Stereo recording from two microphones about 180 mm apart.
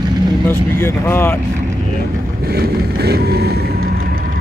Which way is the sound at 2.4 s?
60° right (ahead or behind).